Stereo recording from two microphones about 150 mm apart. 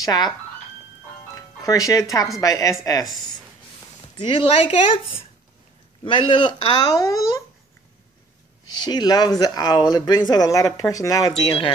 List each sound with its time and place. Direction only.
0.0 s speech: 25° left (ahead or behind)
1.3 s music: 20° left (ahead or behind)
2.4 s speech: 20° left (ahead or behind)
4.2 s speech: 35° left (ahead or behind)
8.8 s speech: 25° left (ahead or behind)